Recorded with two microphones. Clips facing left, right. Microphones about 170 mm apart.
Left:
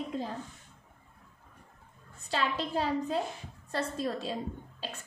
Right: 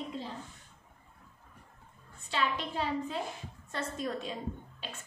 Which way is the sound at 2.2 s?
40° left (ahead or behind).